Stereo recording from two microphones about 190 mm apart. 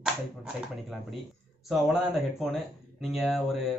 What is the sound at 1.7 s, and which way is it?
Speech, centre (ahead or behind).